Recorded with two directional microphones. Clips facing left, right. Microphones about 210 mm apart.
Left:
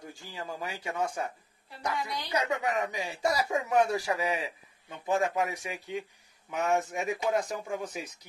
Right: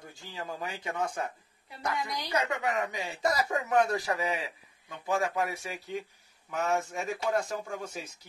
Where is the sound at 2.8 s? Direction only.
15° left (ahead or behind).